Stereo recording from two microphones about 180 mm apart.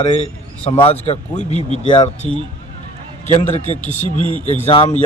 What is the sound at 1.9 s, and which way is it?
Speech, 25° left (ahead or behind).